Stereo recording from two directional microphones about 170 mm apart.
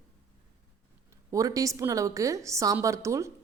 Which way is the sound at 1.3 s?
20° right (ahead or behind).